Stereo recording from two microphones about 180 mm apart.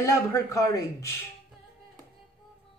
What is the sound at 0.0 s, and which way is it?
Speech, 15° left (ahead or behind).